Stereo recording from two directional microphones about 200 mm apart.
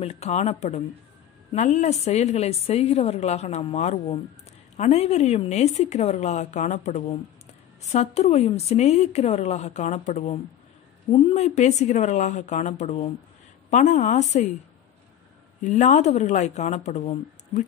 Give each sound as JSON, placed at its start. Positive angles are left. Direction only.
{"t": 0.0, "sound": "a woman's voice", "side_deg": 30}
{"t": 15.6, "sound": "a woman's voice", "side_deg": 35}